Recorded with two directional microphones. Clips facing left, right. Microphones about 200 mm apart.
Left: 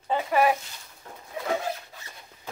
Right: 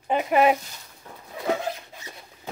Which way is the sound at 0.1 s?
20° right (ahead or behind).